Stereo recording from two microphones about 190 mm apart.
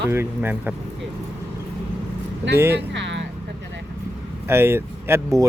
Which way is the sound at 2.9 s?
70° right (ahead or behind).